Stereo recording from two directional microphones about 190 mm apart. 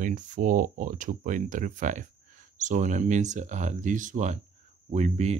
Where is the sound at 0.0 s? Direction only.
45° right (ahead or behind).